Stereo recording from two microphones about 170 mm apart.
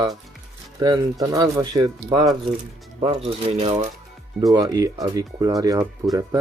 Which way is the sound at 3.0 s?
35° right (ahead or behind).